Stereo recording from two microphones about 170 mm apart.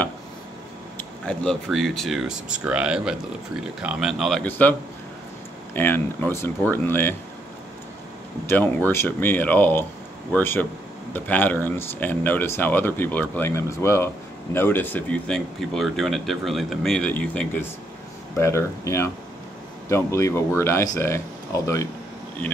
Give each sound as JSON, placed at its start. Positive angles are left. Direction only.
{"t": 0.9, "sound": "speech", "side_deg": 5}
{"t": 5.8, "sound": "speech", "side_deg": 10}
{"t": 8.5, "sound": "speech", "side_deg": 10}